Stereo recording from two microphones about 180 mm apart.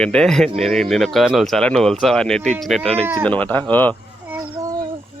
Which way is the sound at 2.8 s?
35° right (ahead or behind).